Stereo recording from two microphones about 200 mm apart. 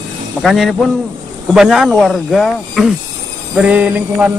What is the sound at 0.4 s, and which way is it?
Speech, centre (ahead or behind).